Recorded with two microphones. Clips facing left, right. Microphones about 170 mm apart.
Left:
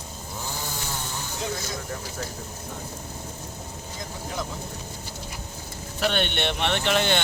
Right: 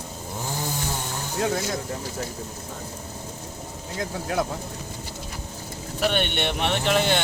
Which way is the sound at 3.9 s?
70° right (ahead or behind).